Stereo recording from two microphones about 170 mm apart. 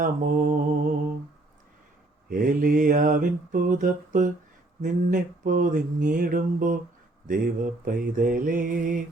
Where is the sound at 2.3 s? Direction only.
55° right (ahead or behind).